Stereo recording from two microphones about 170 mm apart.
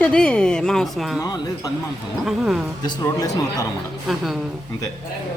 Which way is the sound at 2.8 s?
25° left (ahead or behind).